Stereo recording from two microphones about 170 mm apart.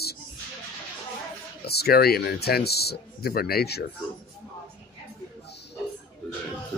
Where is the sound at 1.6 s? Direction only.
70° left (ahead or behind).